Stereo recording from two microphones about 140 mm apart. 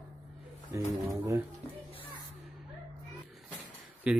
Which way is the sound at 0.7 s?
20° right (ahead or behind).